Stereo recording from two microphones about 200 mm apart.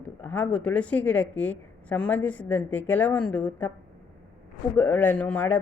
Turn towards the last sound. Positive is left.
turn(degrees=10)  # may be behind; listen again after turning